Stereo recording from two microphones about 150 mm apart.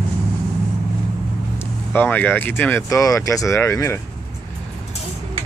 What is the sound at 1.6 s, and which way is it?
Speech, 15° left (ahead or behind).